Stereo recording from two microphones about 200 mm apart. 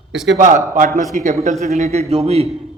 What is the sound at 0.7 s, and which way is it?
A man's voice, 40° right (ahead or behind).